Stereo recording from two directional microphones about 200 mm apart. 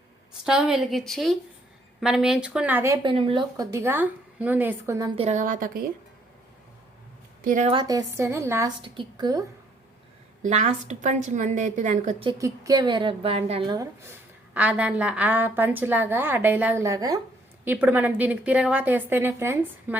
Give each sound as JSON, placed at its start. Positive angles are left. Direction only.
{"t": 0.4, "sound": "a woman's voice", "side_deg": -5}
{"t": 5.1, "sound": "a woman's voice", "side_deg": -35}
{"t": 7.4, "sound": "a woman's voice", "side_deg": -40}
{"t": 7.7, "sound": "a woman's voice", "side_deg": -20}
{"t": 10.4, "sound": "a woman's voice", "side_deg": -35}
{"t": 12.2, "sound": "speech", "side_deg": -20}